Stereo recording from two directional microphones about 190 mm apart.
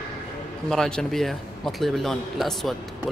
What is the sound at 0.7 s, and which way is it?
A man's voice, 5° left (ahead or behind).